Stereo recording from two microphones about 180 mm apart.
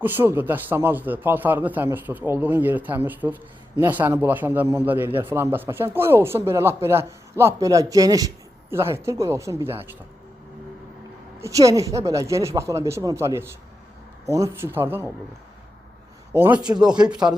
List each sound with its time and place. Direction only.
0.0 s a man's voice: 10° right (ahead or behind)
11.3 s a man's voice: 15° right (ahead or behind)
16.3 s a man's voice: 15° right (ahead or behind)
17.1 s speech: 5° right (ahead or behind)